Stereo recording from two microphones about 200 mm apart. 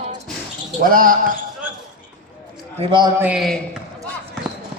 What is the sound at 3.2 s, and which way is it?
Speech, 5° right (ahead or behind).